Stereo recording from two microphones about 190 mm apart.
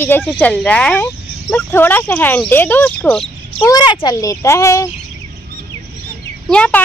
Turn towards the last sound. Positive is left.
turn(degrees=5)  # may be behind; listen again after turning